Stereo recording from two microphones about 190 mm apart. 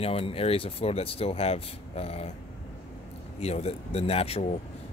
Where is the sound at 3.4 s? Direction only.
35° left (ahead or behind).